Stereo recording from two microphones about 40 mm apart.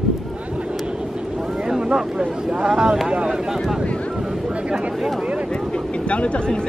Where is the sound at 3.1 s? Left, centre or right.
Right.